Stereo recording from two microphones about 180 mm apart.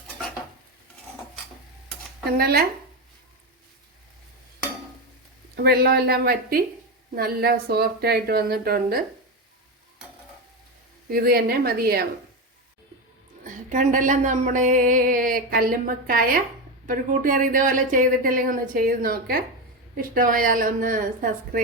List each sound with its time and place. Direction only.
2.4 s speech: 60° right (ahead or behind)
5.5 s speech: 60° right (ahead or behind)
11.1 s speech: 55° right (ahead or behind)
13.4 s speech: 45° right (ahead or behind)